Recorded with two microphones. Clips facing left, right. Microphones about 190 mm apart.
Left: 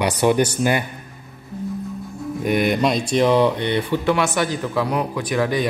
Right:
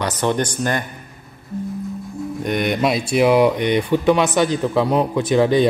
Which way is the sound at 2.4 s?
5° left (ahead or behind).